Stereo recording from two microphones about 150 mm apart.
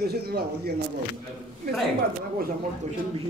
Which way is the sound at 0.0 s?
90° right.